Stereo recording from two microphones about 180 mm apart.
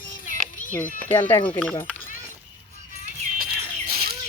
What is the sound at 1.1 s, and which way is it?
Speech, 10° left (ahead or behind).